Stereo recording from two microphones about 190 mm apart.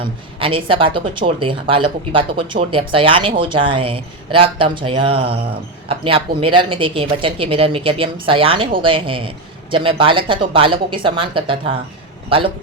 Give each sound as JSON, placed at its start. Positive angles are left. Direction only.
{"t": 0.0, "sound": "speech", "side_deg": -30}